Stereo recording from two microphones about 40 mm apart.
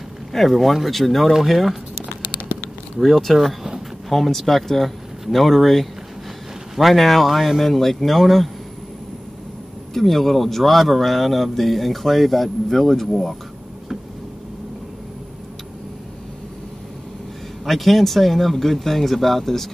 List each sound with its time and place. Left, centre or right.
0.3 s speech: centre
2.4 s a sound: left
3.3 s speech: centre
9.9 s speech: centre
17.6 s speech: centre